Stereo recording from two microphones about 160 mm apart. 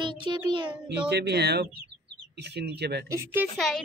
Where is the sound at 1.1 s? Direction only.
90° right.